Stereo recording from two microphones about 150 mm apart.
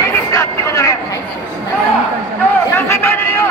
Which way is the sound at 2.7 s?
15° left (ahead or behind).